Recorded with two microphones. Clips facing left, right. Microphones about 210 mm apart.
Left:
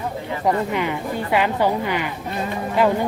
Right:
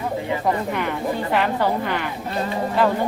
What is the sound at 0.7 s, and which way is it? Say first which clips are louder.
Speech: even; 15° left (ahead or behind).